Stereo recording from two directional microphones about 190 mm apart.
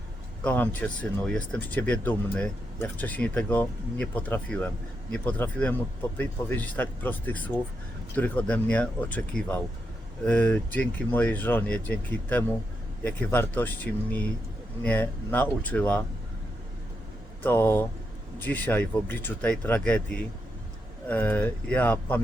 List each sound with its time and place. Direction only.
0.4 s speech: 10° left (ahead or behind)
17.4 s speech: 10° left (ahead or behind)